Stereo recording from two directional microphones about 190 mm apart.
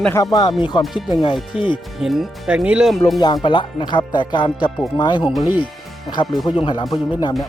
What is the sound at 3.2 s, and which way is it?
Speech, 25° left (ahead or behind).